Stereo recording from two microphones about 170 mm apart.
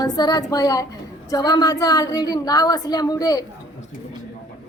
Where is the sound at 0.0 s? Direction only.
20° left (ahead or behind).